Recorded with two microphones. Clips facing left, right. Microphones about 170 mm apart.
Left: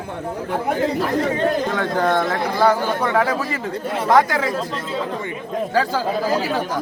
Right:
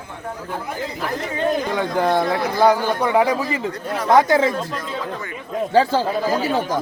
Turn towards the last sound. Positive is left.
turn(degrees=-25)  # may be behind; listen again after turning